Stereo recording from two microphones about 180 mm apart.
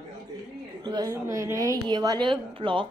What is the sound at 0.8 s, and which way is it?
A woman's voice, 25° right (ahead or behind).